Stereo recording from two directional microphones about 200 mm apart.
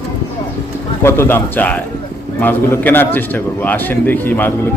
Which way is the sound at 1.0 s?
10° left (ahead or behind).